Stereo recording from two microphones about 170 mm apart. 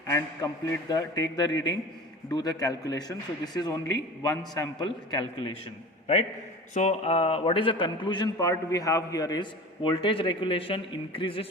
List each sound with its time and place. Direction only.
0.1 s a man's voice: 20° left (ahead or behind)
6.7 s a man's voice: 40° left (ahead or behind)